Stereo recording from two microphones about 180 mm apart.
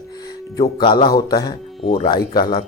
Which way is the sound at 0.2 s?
20° left (ahead or behind).